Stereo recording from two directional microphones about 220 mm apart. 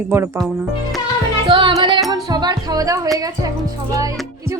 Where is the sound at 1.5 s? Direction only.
20° right (ahead or behind).